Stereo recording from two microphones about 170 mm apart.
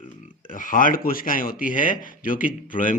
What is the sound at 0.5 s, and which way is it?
A man's voice, 50° left (ahead or behind).